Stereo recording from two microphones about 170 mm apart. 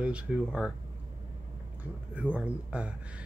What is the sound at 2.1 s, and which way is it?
Speech, 10° right (ahead or behind).